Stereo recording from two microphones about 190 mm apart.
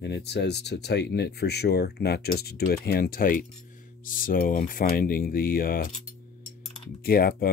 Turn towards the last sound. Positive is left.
turn(degrees=50)  # may be behind; listen again after turning